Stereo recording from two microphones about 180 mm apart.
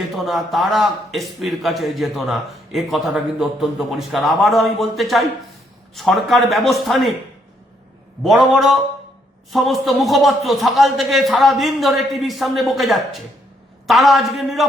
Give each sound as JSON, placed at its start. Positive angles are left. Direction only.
{"t": 0.2, "sound": "a man's voice", "side_deg": 0}
{"t": 8.2, "sound": "a man's voice", "side_deg": 0}